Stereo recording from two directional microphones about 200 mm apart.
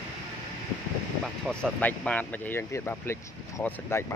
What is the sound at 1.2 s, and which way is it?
Speech, centre (ahead or behind).